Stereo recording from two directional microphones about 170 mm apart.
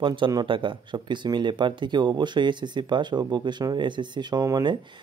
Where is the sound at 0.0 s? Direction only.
30° right (ahead or behind).